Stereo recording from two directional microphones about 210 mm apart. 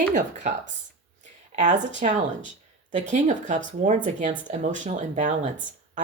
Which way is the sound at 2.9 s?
35° right (ahead or behind).